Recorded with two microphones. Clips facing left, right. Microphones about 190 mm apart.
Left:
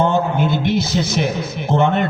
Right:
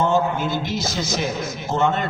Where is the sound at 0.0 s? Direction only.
60° left (ahead or behind).